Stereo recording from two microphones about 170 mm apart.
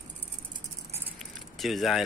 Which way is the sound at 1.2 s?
Centre (ahead or behind).